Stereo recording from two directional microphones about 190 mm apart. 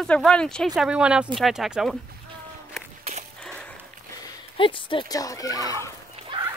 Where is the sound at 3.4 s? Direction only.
5° left (ahead or behind).